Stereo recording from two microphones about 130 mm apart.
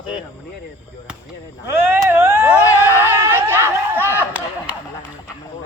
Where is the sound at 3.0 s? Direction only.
15° right (ahead or behind).